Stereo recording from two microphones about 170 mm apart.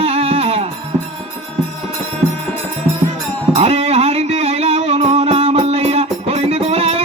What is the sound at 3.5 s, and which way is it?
Music, 35° right (ahead or behind).